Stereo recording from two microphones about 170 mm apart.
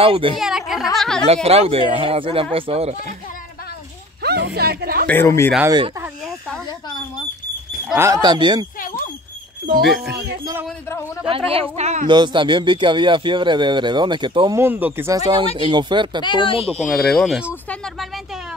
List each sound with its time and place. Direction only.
0.0 s speech: 30° right (ahead or behind)
0.4 s speech: centre (ahead or behind)
1.2 s speech: 35° right (ahead or behind)
4.2 s speech: 75° right (ahead or behind)
5.0 s speech: 10° left (ahead or behind)
5.7 s speech: 20° right (ahead or behind)
7.9 s speech: 15° right (ahead or behind)
9.8 s speech: centre (ahead or behind)
10.0 s speech: 75° right (ahead or behind)
11.2 s speech: 35° right (ahead or behind)
12.1 s speech: 25° right (ahead or behind)
14.6 s speech: 10° right (ahead or behind); by 16.3 s 25° right (ahead or behind)
16.3 s speech: 30° left (ahead or behind)
16.9 s speech: 5° left (ahead or behind)